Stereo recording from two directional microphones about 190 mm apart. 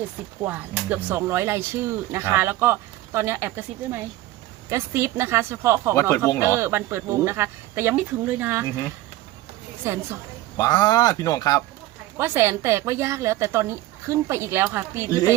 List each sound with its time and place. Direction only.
0.4 s speech: 10° right (ahead or behind)
5.9 s speech: 15° left (ahead or behind)
6.4 s speech: 15° right (ahead or behind)
9.8 s speech: 15° right (ahead or behind)
10.6 s speech: 20° left (ahead or behind)
12.1 s speech: 10° right (ahead or behind)